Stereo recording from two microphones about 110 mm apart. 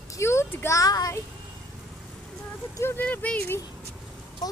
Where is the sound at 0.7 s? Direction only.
35° left (ahead or behind).